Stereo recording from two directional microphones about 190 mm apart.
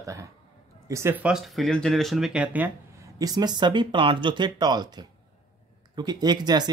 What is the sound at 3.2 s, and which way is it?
Speech, 20° right (ahead or behind).